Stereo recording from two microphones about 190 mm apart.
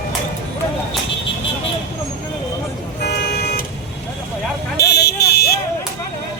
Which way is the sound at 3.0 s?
60° left (ahead or behind).